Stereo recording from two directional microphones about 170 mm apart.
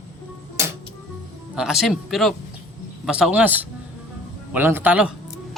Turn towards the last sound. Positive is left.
turn(degrees=-10)  # may be behind; listen again after turning